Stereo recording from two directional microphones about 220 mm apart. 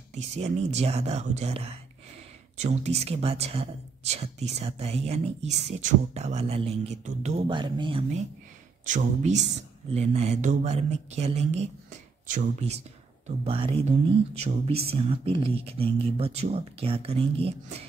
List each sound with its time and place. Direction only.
0.1 s speech: 30° right (ahead or behind)
8.8 s speech: 35° right (ahead or behind)